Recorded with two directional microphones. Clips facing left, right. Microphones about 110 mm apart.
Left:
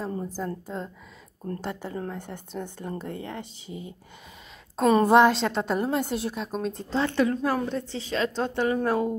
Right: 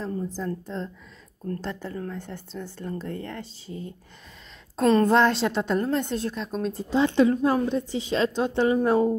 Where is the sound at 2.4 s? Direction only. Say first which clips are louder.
Left 2 dB; 55° left (ahead or behind).